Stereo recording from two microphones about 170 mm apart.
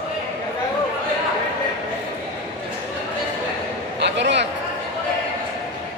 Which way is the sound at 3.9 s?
90° right.